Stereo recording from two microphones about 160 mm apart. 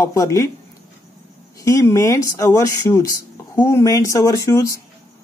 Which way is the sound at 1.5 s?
20° left (ahead or behind).